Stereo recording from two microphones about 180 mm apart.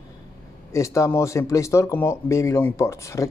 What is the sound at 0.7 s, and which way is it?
Speech, 15° left (ahead or behind).